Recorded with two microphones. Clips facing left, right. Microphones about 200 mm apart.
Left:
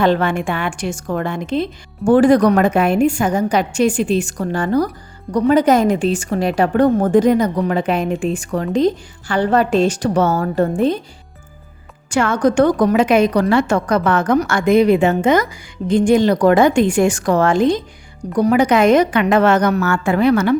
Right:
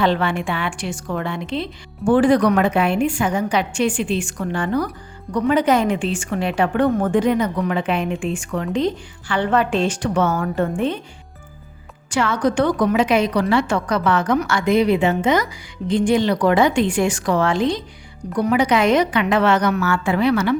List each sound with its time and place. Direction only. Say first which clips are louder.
0.0 s a woman's voice: left 3 dB; 45° left (ahead or behind)
12.1 s a woman's voice: left 4 dB; 45° left (ahead or behind)